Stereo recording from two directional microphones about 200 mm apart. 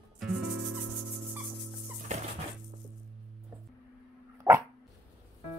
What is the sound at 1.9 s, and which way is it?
Music, 35° right (ahead or behind).